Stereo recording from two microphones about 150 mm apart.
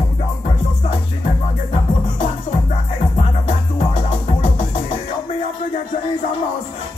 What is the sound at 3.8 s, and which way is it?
Music, 35° left (ahead or behind).